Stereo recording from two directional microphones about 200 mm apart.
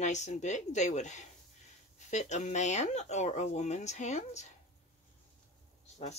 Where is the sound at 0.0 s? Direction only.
35° left (ahead or behind).